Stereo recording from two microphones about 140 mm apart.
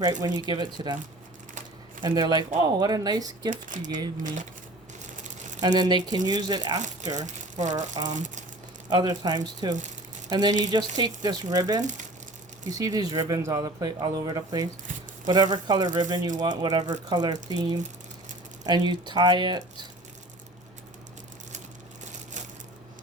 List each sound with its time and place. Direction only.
0.0 s speech: 30° right (ahead or behind)
2.0 s speech: 35° right (ahead or behind)
3.5 s speech: 70° right (ahead or behind)
3.8 s speech: 30° right (ahead or behind)
5.6 s speech: 30° right (ahead or behind)
7.6 s speech: 60° right (ahead or behind)
8.9 s speech: 30° right (ahead or behind)
11.8 s speech: 60° right (ahead or behind)
12.7 s speech: 25° right (ahead or behind)